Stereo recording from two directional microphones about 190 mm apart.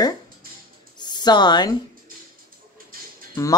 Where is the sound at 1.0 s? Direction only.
20° left (ahead or behind).